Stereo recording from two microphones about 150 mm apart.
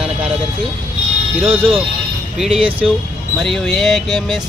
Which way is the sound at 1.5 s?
15° right (ahead or behind).